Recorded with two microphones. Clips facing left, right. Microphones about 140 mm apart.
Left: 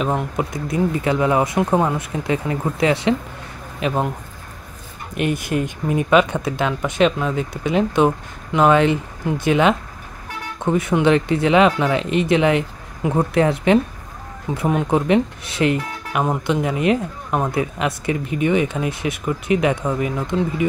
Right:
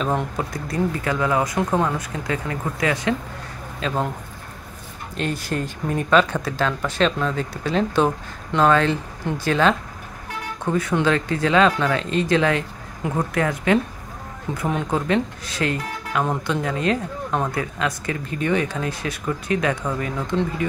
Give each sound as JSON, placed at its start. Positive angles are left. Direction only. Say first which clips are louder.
{"t": 0.0, "sound": "speech", "louder": "left 2 dB", "side_deg": 10}
{"t": 5.1, "sound": "speech", "louder": "left 4 dB", "side_deg": 15}